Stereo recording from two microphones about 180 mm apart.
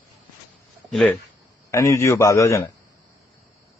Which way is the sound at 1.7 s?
15° left (ahead or behind).